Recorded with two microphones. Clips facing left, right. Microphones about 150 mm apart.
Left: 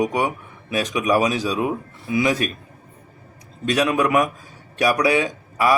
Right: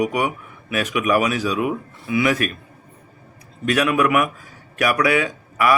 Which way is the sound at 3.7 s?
25° left (ahead or behind).